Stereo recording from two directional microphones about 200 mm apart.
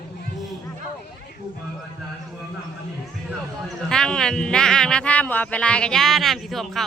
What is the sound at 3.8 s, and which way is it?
A man's voice, 5° left (ahead or behind).